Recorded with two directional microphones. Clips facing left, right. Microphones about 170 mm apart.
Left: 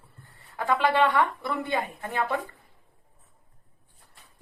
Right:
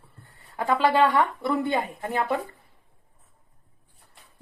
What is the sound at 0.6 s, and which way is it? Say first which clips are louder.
A woman's voice: right 2 dB; 25° right (ahead or behind).